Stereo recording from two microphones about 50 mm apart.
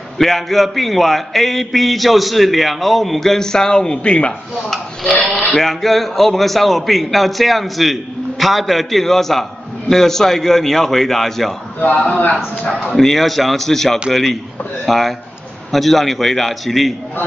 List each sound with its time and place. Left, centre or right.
0.2 s a man's voice: centre; by 4.3 s left
5.5 s a man's voice: centre
12.1 s speech: left
12.6 s a man's voice: centre